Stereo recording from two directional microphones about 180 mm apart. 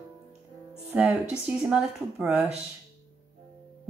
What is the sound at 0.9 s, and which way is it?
Speech, 5° right (ahead or behind).